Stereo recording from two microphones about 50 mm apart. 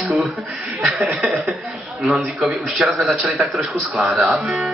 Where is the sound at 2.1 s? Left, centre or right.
Centre.